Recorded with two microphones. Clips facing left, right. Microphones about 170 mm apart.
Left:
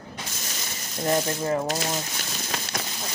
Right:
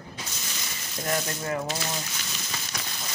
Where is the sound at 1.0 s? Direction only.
30° left (ahead or behind).